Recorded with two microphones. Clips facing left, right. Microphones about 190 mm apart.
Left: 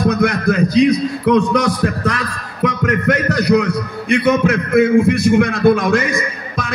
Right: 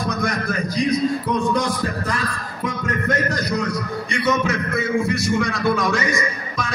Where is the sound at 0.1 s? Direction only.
65° left (ahead or behind).